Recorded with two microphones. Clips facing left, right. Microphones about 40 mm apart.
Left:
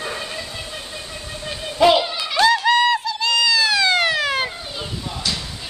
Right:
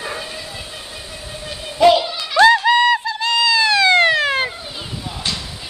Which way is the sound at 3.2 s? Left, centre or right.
Centre.